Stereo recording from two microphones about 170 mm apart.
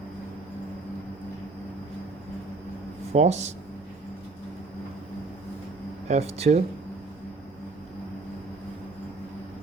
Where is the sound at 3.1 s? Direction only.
40° right (ahead or behind).